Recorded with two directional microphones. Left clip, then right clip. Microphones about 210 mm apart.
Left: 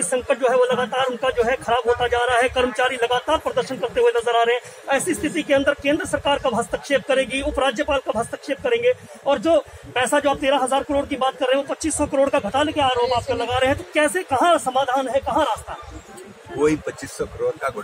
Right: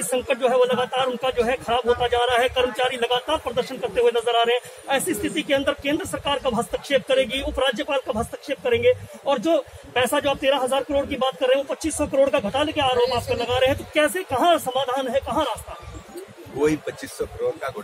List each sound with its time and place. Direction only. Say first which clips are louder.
0.1 s a man's voice: left 2 dB; 15° left (ahead or behind)
16.5 s speech: left 2 dB; 5° left (ahead or behind)